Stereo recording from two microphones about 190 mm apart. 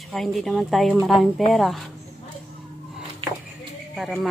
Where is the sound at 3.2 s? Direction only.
30° right (ahead or behind).